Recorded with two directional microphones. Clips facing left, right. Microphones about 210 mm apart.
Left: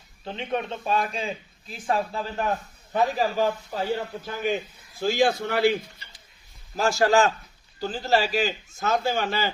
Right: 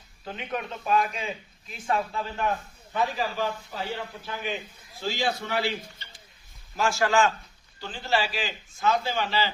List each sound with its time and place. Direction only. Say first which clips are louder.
0.3 s a man's voice: left 4 dB; 30° left (ahead or behind); by 5.8 s 50° left (ahead or behind)
6.7 s a man's voice: left 3 dB; 40° left (ahead or behind)